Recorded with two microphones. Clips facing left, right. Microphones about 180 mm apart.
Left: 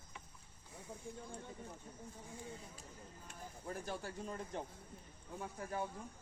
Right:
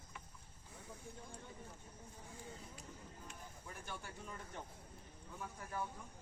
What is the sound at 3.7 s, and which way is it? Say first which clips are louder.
Speech: left 7 dB; 35° left (ahead or behind).